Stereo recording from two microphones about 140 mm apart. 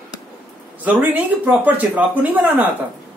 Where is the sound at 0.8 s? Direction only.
10° right (ahead or behind).